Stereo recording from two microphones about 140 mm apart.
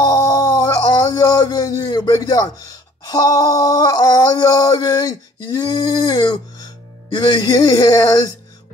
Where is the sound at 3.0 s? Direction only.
25° left (ahead or behind).